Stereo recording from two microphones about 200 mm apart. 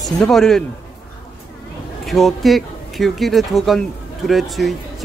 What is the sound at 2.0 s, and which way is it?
Speech, centre (ahead or behind).